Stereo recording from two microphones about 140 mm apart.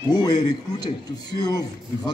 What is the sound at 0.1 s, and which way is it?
A man's voice, 25° left (ahead or behind).